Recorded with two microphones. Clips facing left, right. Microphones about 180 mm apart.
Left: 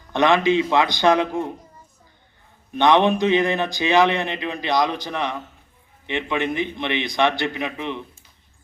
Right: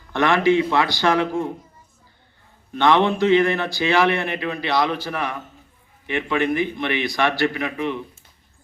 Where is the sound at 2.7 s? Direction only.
15° left (ahead or behind).